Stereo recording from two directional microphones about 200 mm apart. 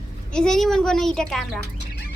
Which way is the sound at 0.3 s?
5° left (ahead or behind).